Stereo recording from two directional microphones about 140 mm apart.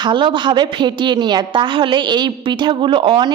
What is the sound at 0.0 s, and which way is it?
A woman's voice, 35° right (ahead or behind).